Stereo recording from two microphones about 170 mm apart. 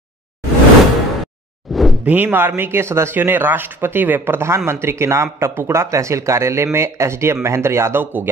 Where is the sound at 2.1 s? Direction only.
10° right (ahead or behind).